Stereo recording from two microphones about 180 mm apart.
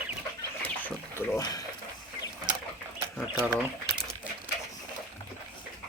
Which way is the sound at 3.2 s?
5° right (ahead or behind).